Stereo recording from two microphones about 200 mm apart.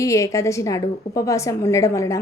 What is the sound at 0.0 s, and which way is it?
A woman's voice, 15° left (ahead or behind).